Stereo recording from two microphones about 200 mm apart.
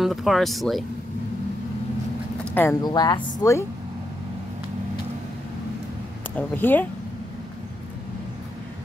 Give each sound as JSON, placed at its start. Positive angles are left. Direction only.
{"t": 0.0, "sound": "speech", "side_deg": 0}
{"t": 2.5, "sound": "speech", "side_deg": 15}
{"t": 6.3, "sound": "speech", "side_deg": 10}